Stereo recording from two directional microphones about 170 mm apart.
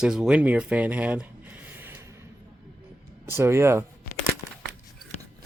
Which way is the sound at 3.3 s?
15° right (ahead or behind).